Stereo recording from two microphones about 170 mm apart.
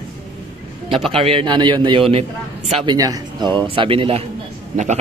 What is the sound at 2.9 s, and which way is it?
A man's voice, 20° right (ahead or behind).